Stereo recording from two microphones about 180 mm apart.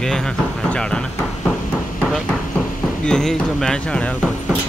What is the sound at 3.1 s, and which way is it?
A man's voice, 5° left (ahead or behind).